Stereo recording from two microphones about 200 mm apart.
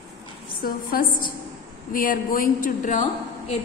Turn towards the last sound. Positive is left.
turn(degrees=35)  # may be behind; listen again after turning